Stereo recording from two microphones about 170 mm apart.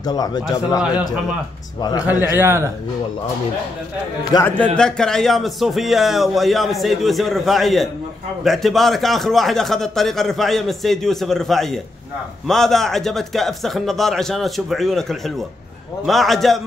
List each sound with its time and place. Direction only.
0.0 s speech: 25° left (ahead or behind)
2.0 s a man's voice: 15° right (ahead or behind)
4.2 s speech: 25° left (ahead or behind)
4.7 s a man's voice: 5° left (ahead or behind)